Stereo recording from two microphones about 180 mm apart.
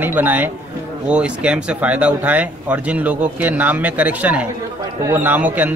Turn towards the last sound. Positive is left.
turn(degrees=-10)  # may be behind; listen again after turning